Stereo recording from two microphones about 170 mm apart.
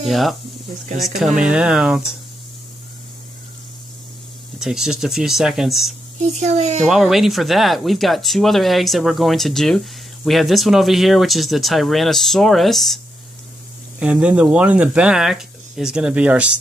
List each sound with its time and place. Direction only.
0.0 s speech: centre (ahead or behind)
4.6 s speech: 5° right (ahead or behind)
6.4 s speech: 40° right (ahead or behind)
6.8 s speech: centre (ahead or behind)